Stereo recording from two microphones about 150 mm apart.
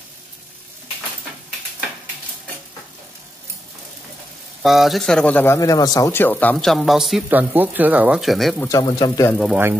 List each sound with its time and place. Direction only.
4.6 s speech: centre (ahead or behind)
8.6 s speech: 25° left (ahead or behind)